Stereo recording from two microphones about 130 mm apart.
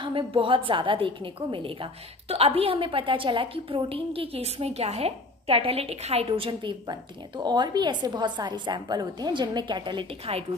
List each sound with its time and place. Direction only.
0.0 s a woman's voice: 40° right (ahead or behind)